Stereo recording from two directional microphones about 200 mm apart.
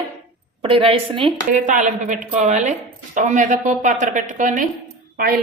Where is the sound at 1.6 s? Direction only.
40° right (ahead or behind).